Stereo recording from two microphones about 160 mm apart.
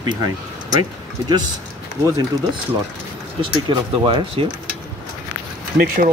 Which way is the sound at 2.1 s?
20° right (ahead or behind).